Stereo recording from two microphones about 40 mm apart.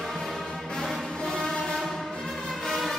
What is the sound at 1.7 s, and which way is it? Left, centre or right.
Music, centre.